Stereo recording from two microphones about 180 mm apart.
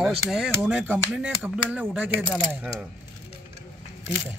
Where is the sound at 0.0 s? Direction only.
5° right (ahead or behind).